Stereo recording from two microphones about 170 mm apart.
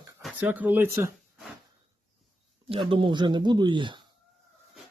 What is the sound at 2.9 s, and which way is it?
Speech, 30° right (ahead or behind).